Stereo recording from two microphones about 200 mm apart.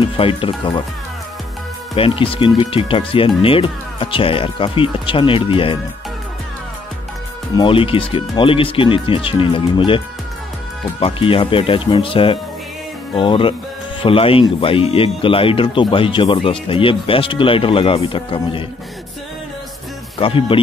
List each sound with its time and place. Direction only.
0.0 s speech: 25° left (ahead or behind)
2.0 s speech: 25° left (ahead or behind)
7.5 s speech: 25° left (ahead or behind)
20.2 s speech: 25° left (ahead or behind)